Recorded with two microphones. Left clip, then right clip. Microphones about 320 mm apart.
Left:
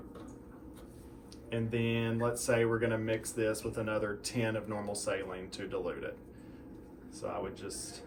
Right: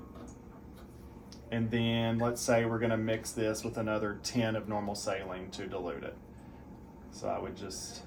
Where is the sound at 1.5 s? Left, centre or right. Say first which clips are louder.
Right 1 dB; centre.